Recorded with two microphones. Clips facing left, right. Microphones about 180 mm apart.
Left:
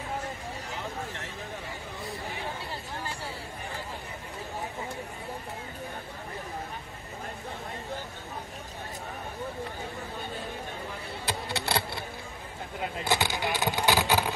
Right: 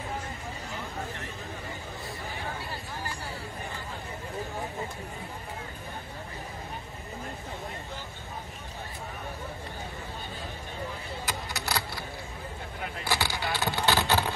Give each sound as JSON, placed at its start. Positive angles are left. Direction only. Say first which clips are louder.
{"t": 11.2, "sound": "vehicle", "louder": "left 4 dB", "side_deg": 30}